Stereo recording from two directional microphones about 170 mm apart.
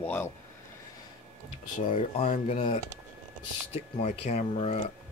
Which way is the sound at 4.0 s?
45° left (ahead or behind).